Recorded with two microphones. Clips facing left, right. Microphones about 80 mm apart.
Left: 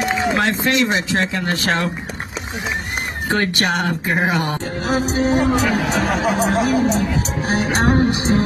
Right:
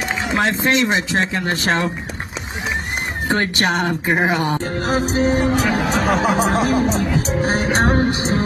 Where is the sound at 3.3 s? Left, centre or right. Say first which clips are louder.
Even; right.